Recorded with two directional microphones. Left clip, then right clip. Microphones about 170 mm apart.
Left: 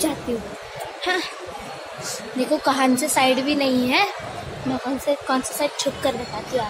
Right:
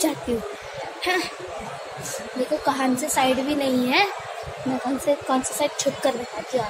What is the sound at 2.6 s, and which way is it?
Speech, 35° left (ahead or behind).